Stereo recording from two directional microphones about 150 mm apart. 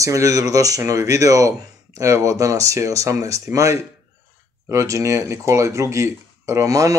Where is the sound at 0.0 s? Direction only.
20° right (ahead or behind).